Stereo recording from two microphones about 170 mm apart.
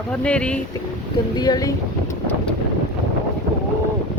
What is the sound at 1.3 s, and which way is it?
Speech, 25° left (ahead or behind).